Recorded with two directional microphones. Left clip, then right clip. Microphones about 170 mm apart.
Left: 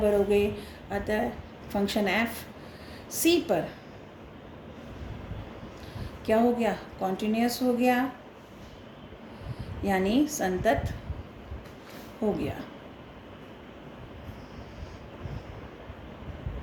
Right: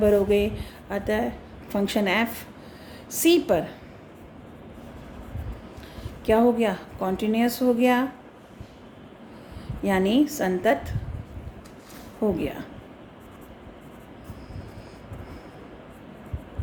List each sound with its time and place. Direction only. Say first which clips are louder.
0.0 s a woman's voice: right 4 dB; 55° right (ahead or behind)
6.2 s a woman's voice: right 4 dB; 55° right (ahead or behind)
9.8 s a woman's voice: right 4 dB; 55° right (ahead or behind)
12.4 s speech: right 4 dB; 55° right (ahead or behind)